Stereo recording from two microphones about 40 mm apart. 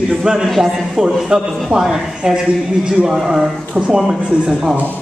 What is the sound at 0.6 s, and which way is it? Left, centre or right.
Speech, centre.